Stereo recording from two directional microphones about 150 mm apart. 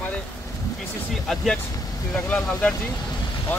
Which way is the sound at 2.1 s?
5° left (ahead or behind).